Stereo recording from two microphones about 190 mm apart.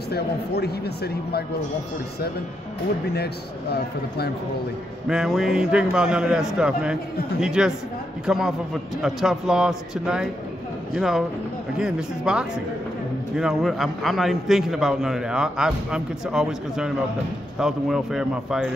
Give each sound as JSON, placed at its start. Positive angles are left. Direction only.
{"t": 0.1, "sound": "speech", "side_deg": 60}
{"t": 5.0, "sound": "a man's voice", "side_deg": -5}